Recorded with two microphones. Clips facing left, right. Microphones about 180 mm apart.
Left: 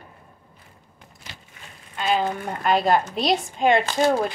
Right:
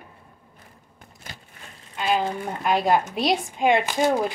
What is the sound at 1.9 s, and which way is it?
A woman's voice, 10° right (ahead or behind).